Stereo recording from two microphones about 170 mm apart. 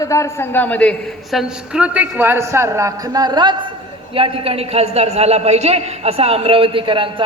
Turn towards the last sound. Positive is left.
turn(degrees=-30)  # may be behind; listen again after turning